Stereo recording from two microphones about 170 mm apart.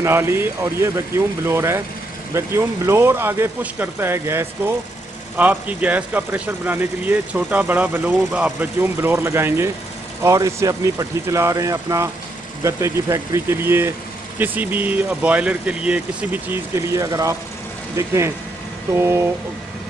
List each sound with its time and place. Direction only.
0.0 s speech: 15° right (ahead or behind)